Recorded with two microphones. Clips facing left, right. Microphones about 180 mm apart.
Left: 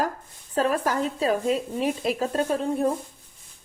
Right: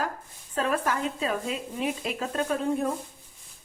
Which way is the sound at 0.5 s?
35° left (ahead or behind).